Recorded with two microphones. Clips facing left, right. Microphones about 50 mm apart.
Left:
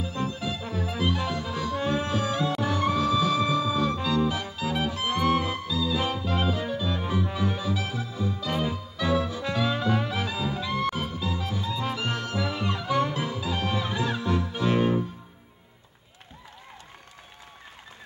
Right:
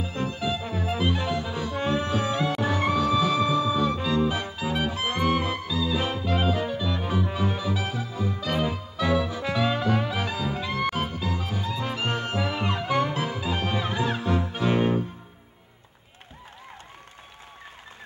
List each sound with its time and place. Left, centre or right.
0.0 s music: right
9.4 s music: centre
10.0 s music: right